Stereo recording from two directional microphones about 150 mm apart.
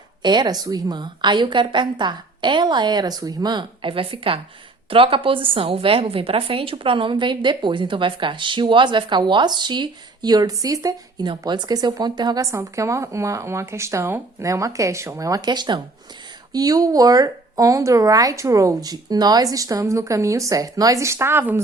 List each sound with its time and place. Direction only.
0.2 s a woman's voice: 30° right (ahead or behind)